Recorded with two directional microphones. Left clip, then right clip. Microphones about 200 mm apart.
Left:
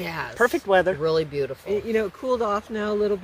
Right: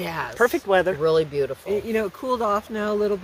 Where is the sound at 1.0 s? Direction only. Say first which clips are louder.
Right 3 dB; centre (ahead or behind).